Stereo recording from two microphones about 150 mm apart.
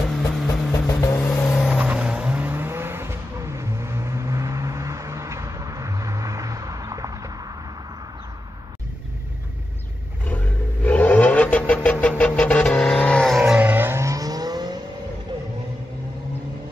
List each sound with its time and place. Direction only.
0.1 s a sound: centre (ahead or behind)
1.0 s vehicle: 15° left (ahead or behind)
1.6 s vehicle: 5° right (ahead or behind); by 7.5 s 25° right (ahead or behind)
10.2 s vehicle: 10° left (ahead or behind)
13.4 s vehicle: 10° right (ahead or behind); by 14.8 s 25° right (ahead or behind)